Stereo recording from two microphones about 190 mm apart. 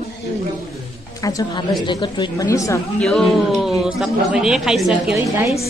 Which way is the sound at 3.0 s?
Centre (ahead or behind).